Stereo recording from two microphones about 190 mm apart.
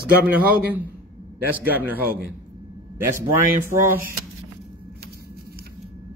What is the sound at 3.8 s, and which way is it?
Speech, 10° right (ahead or behind).